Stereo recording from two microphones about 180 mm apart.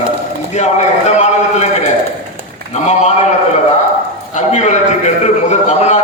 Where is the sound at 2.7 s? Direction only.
40° left (ahead or behind).